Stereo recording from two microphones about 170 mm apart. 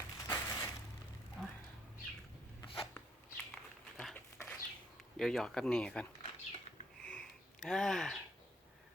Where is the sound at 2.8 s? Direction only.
10° left (ahead or behind).